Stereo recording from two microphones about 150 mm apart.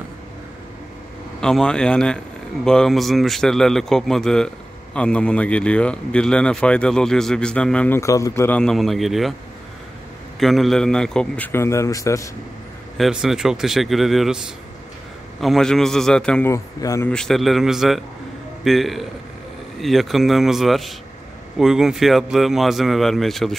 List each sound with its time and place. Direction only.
1.4 s a man's voice: 5° left (ahead or behind)
10.4 s a man's voice: centre (ahead or behind); by 12.3 s 20° left (ahead or behind)
12.9 s speech: centre (ahead or behind)
15.4 s speech: 5° left (ahead or behind)
16.4 s a man's voice: 20° left (ahead or behind)
17.1 s speech: 5° left (ahead or behind)